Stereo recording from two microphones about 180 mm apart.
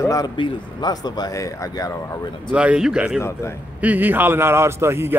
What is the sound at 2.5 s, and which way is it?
A man's voice, 5° right (ahead or behind).